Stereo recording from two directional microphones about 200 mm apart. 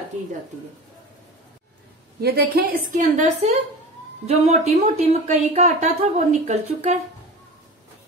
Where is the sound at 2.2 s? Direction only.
50° right (ahead or behind); by 6.9 s 35° right (ahead or behind).